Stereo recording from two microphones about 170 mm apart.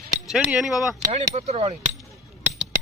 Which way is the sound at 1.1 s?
40° right (ahead or behind).